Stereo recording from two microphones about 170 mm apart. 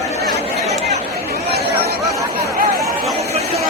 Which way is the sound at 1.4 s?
75° right (ahead or behind).